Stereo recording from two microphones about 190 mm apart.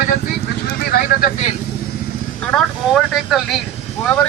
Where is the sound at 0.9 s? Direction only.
55° left (ahead or behind).